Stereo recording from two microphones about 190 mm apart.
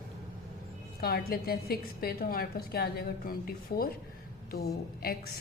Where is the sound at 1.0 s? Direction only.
55° left (ahead or behind).